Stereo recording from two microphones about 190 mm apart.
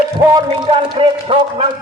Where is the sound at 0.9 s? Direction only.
30° right (ahead or behind).